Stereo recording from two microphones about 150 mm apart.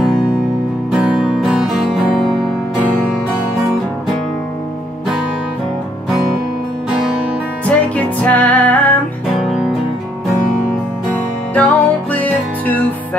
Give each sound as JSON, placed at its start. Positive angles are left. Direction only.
{"t": 0.9, "sound": "music", "side_deg": -5}
{"t": 6.9, "sound": "music", "side_deg": -5}
{"t": 7.6, "sound": "music", "side_deg": 10}
{"t": 11.5, "sound": "music", "side_deg": 10}